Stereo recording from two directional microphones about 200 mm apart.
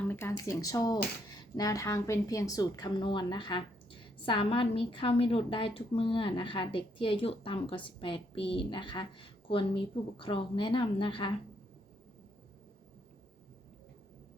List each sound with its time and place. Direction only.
0.1 s a woman's voice: 10° left (ahead or behind)